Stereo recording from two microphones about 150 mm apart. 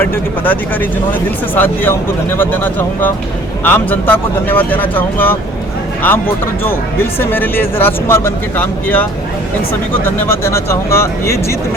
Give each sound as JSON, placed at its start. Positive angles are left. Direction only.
{"t": 0.0, "sound": "speech", "side_deg": 10}